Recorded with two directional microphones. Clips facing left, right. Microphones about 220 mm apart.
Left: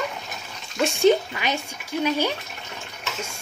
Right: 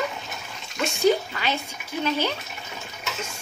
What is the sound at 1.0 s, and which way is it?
Speech, 20° left (ahead or behind).